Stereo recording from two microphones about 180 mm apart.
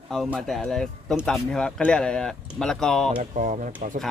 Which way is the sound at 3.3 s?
45° right (ahead or behind).